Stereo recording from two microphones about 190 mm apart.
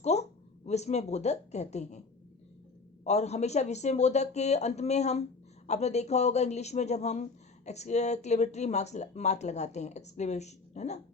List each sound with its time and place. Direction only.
0.0 s speech: 35° left (ahead or behind)
3.0 s speech: 35° left (ahead or behind)